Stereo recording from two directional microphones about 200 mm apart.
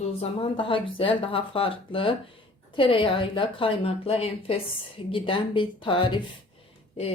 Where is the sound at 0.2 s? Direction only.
25° left (ahead or behind).